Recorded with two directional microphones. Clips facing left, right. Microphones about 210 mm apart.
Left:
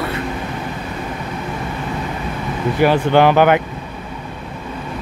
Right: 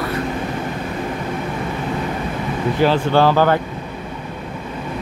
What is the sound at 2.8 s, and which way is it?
Speech, 15° left (ahead or behind).